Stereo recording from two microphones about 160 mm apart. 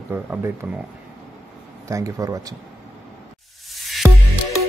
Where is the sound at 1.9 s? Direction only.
20° right (ahead or behind).